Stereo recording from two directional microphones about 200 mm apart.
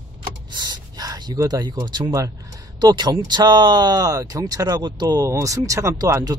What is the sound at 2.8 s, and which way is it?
Speech, 20° right (ahead or behind).